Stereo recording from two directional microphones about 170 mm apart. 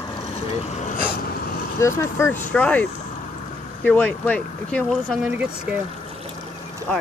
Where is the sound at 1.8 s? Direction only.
15° left (ahead or behind); by 5.8 s 10° right (ahead or behind).